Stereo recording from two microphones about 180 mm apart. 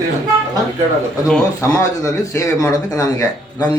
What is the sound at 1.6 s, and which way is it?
Speech, 15° left (ahead or behind).